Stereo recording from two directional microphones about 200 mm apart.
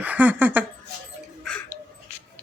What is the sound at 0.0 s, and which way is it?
Speech, 10° right (ahead or behind).